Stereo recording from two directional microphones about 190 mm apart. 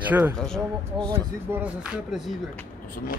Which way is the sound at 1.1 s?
10° right (ahead or behind).